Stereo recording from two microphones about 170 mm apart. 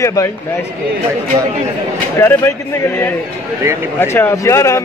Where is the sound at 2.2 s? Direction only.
15° left (ahead or behind).